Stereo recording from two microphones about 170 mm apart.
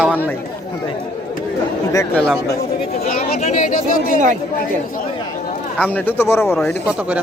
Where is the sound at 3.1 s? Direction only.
40° left (ahead or behind).